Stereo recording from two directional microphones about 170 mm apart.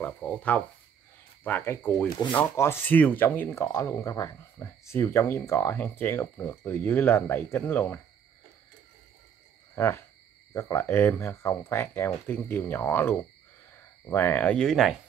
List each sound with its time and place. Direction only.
0.0 s speech: 10° left (ahead or behind)
9.8 s speech: 15° left (ahead or behind)